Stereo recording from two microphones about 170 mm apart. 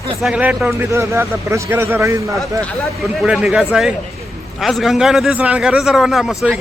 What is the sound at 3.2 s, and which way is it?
A man's voice, 5° right (ahead or behind).